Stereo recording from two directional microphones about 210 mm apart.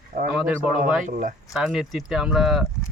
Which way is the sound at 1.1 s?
40° right (ahead or behind).